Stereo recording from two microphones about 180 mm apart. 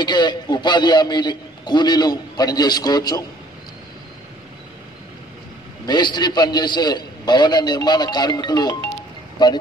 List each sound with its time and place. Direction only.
0.0 s a man's voice: 25° left (ahead or behind)
5.9 s a man's voice: 25° left (ahead or behind)